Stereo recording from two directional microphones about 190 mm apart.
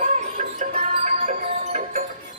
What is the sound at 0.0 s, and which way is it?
Music, 40° right (ahead or behind).